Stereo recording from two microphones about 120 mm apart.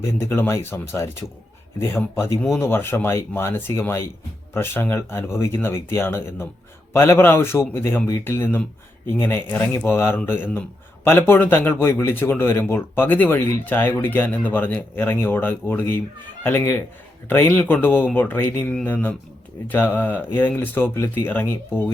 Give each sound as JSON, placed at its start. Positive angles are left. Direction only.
{"t": 0.3, "sound": "speech", "side_deg": 20}
{"t": 18.7, "sound": "speech", "side_deg": 5}